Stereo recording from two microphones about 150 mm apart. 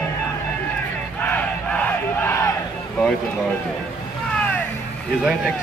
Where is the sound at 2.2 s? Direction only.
20° left (ahead or behind).